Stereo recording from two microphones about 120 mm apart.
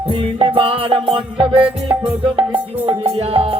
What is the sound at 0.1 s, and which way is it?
Music, 55° right (ahead or behind).